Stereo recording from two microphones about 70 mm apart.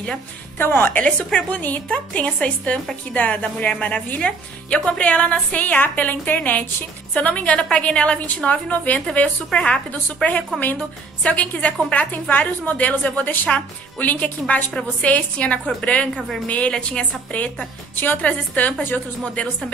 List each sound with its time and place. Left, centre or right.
0.6 s speech: left
1.0 s a woman's voice: centre